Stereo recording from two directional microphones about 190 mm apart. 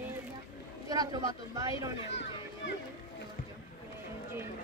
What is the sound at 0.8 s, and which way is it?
Speech, 20° right (ahead or behind).